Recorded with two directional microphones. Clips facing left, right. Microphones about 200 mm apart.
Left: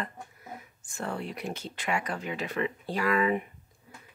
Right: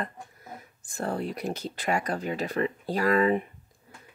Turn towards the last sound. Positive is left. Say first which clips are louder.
# right 3 dB
turn(degrees=-35)  # may be behind; listen again after turning